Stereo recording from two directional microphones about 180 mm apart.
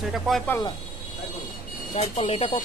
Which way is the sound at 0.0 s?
Centre (ahead or behind).